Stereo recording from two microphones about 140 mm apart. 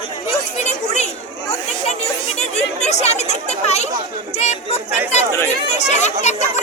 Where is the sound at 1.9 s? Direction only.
50° left (ahead or behind).